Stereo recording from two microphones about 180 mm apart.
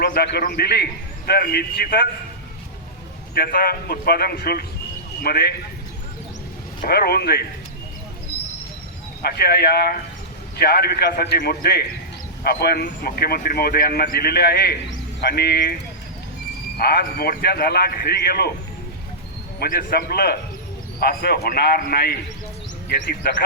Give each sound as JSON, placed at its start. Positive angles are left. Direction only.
{"t": 0.0, "sound": "a man's voice", "side_deg": 60}
{"t": 3.3, "sound": "a man's voice", "side_deg": 55}
{"t": 6.8, "sound": "a man's voice", "side_deg": 60}
{"t": 9.2, "sound": "a man's voice", "side_deg": 60}
{"t": 16.7, "sound": "a man's voice", "side_deg": 55}
{"t": 19.5, "sound": "a man's voice", "side_deg": 55}